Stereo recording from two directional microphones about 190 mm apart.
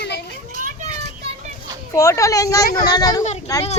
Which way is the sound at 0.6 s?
40° right (ahead or behind).